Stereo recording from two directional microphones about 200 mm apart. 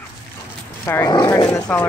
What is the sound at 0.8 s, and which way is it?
Speech, 15° left (ahead or behind).